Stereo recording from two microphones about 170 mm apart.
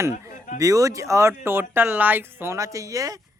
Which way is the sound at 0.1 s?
55° left (ahead or behind).